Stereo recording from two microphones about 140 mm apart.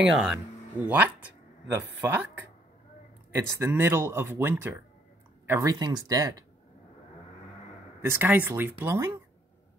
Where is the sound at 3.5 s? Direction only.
15° right (ahead or behind).